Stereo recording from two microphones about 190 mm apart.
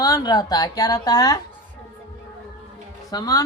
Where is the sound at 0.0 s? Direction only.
20° left (ahead or behind).